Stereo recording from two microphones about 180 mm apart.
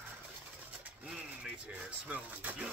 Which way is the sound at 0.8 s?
5° right (ahead or behind).